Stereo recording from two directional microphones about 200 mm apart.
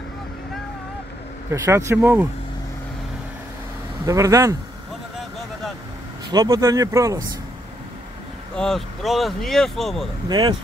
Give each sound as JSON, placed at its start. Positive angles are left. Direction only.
{"t": 1.5, "sound": "speech", "side_deg": -15}
{"t": 4.0, "sound": "speech", "side_deg": -15}
{"t": 6.3, "sound": "speech", "side_deg": -15}
{"t": 8.5, "sound": "speech", "side_deg": 0}
{"t": 10.2, "sound": "speech", "side_deg": -20}